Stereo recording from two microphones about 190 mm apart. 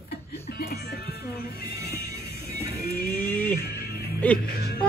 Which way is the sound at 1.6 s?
15° right (ahead or behind).